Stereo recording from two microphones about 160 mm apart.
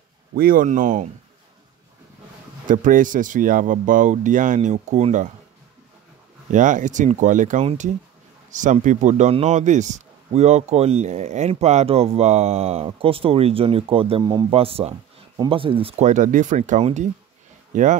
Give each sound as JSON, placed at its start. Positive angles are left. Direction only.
{"t": 0.3, "sound": "speech", "side_deg": -65}
{"t": 2.6, "sound": "speech", "side_deg": -55}
{"t": 6.5, "sound": "a man's voice", "side_deg": -50}
{"t": 16.1, "sound": "speech", "side_deg": -55}